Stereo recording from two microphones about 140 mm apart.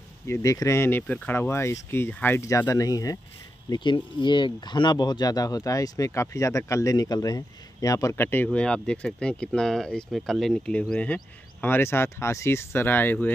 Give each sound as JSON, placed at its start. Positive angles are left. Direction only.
{"t": 0.3, "sound": "speech", "side_deg": 25}